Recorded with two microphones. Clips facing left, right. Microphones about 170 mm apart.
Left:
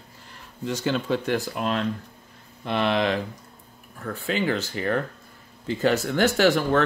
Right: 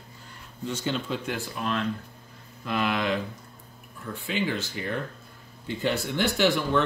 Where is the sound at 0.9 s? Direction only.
70° left (ahead or behind).